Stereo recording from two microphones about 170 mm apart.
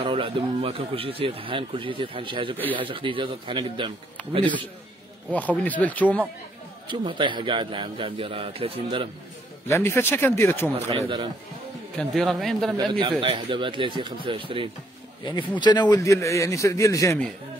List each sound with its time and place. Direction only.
0.0 s a man's voice: 30° right (ahead or behind)
5.6 s speech: 10° left (ahead or behind)
6.9 s speech: 30° right (ahead or behind)
9.7 s speech: 15° left (ahead or behind)
10.7 s speech: 35° right (ahead or behind)
12.0 s speech: 5° left (ahead or behind)
13.2 s speech: 30° right (ahead or behind)
15.6 s a man's voice: 25° left (ahead or behind)